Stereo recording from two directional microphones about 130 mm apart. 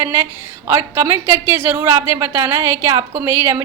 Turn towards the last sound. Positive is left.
turn(degrees=-20)  # may be behind; listen again after turning